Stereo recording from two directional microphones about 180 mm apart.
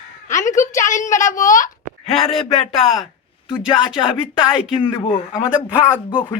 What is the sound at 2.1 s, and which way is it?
Speech, 30° left (ahead or behind).